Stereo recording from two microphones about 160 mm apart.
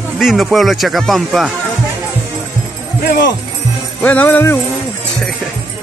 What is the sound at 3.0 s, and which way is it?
Speech, 80° left.